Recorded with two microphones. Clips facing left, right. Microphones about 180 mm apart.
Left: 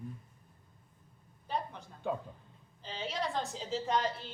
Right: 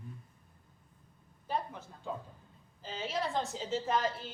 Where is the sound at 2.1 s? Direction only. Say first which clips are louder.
Left 5 dB; 65° left (ahead or behind).